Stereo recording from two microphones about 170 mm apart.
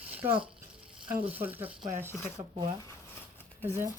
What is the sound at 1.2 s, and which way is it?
Speech, 10° right (ahead or behind).